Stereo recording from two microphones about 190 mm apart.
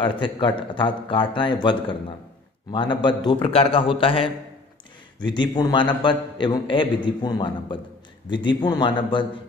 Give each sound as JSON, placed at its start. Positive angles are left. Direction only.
{"t": 0.0, "sound": "a man's voice", "side_deg": 25}